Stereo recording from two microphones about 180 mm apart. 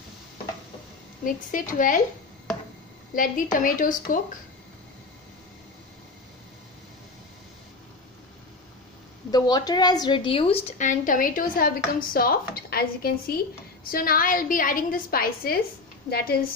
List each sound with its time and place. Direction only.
1.2 s a woman's voice: 50° left (ahead or behind)
3.2 s a woman's voice: 45° left (ahead or behind)
9.3 s a woman's voice: 20° left (ahead or behind); by 16.4 s 55° left (ahead or behind)